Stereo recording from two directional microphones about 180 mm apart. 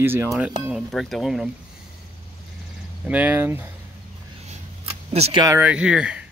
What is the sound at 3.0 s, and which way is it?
Speech, 5° right (ahead or behind).